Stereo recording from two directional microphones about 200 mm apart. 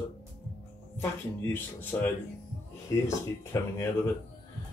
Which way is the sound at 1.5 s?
10° left (ahead or behind).